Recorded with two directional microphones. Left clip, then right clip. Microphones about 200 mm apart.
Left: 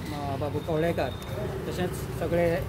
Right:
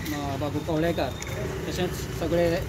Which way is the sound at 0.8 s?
10° left (ahead or behind).